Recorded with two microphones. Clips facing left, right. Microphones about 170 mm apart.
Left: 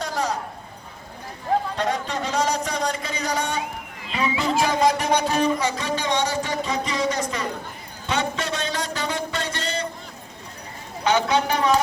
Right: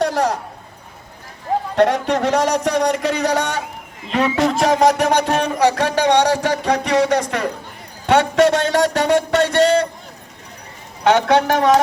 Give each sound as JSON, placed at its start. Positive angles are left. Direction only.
{"t": 0.0, "sound": "a sound", "side_deg": -70}
{"t": 1.7, "sound": "a man's voice", "side_deg": -70}
{"t": 11.0, "sound": "speech", "side_deg": -75}